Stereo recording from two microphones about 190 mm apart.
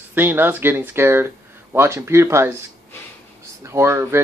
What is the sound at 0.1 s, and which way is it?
Speech, 10° right (ahead or behind).